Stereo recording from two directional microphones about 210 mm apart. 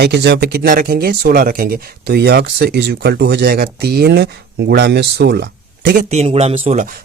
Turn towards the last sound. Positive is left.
turn(degrees=-30)  # may be behind; listen again after turning